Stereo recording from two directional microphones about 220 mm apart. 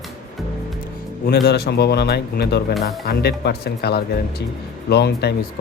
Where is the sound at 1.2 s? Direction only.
45° left (ahead or behind).